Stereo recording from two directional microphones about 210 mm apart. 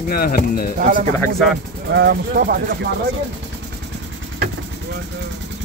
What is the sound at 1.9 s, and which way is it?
Speech, 50° right (ahead or behind).